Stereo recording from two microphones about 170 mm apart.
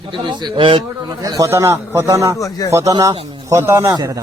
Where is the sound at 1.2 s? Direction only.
20° right (ahead or behind).